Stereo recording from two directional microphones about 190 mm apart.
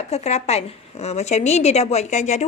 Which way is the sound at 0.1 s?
35° left (ahead or behind).